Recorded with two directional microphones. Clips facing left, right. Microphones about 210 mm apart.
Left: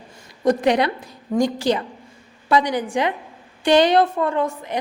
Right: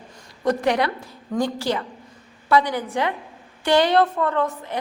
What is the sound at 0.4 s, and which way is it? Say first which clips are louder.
A woman's voice: left 3 dB; 20° left (ahead or behind).